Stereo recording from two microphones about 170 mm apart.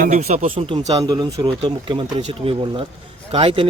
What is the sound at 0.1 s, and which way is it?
Speech, 40° right (ahead or behind).